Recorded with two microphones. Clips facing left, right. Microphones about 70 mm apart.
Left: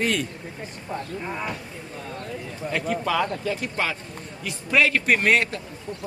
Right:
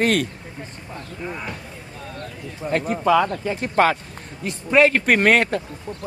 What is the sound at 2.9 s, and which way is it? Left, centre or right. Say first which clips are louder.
Speech: right 7 dB; right.